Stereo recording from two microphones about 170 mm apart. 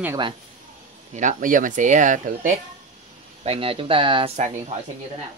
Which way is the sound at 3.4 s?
35° right (ahead or behind).